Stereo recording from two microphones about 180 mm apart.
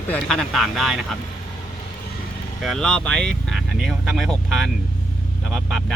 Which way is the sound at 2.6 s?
5° left (ahead or behind).